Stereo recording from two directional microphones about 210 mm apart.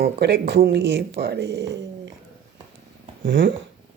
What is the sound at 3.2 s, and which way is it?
Speech, 60° right (ahead or behind).